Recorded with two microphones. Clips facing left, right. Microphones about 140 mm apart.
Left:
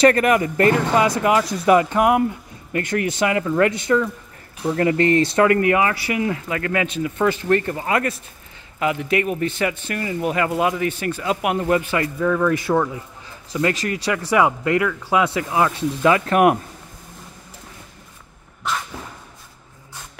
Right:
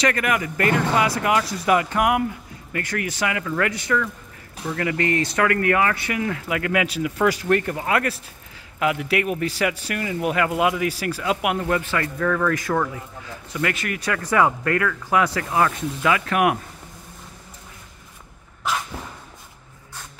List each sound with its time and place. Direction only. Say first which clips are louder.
0.0 s speech: left 7 dB; 30° left (ahead or behind); by 6.4 s 10° left (ahead or behind)
6.4 s speech: even; 5° right (ahead or behind)
11.5 s speech: left 3 dB; 15° left (ahead or behind)
13.5 s speech: left 4 dB; 30° left (ahead or behind)
14.3 s speech: left 2 dB; 15° left (ahead or behind)
16.1 s speech: left 4 dB; 35° left (ahead or behind)